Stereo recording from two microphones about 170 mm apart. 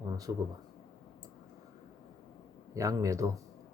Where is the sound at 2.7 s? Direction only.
20° right (ahead or behind).